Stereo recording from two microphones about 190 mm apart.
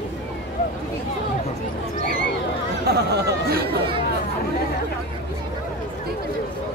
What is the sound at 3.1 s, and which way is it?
Speech, 55° right (ahead or behind).